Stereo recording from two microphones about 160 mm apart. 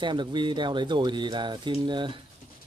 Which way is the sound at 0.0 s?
30° right (ahead or behind).